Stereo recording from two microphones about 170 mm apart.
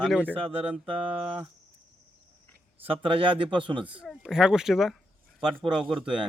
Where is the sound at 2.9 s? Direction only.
30° right (ahead or behind).